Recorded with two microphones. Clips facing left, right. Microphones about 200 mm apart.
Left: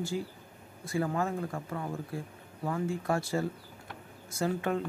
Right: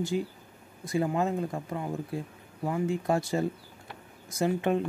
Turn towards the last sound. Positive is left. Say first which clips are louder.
# right 4 dB
turn(degrees=-20)  # may be behind; listen again after turning